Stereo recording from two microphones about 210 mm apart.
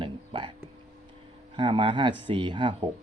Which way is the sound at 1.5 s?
25° right (ahead or behind).